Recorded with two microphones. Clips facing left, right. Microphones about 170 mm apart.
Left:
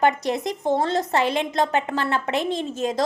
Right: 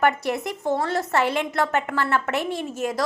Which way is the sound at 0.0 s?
20° left (ahead or behind).